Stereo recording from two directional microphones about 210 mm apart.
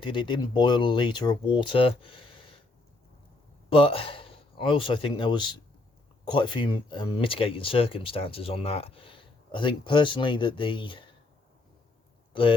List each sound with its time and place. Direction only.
0.0 s speech: 20° left (ahead or behind)
3.7 s speech: 25° left (ahead or behind)
12.3 s speech: 25° left (ahead or behind)